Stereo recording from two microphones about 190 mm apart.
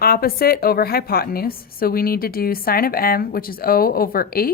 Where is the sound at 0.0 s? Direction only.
50° left (ahead or behind).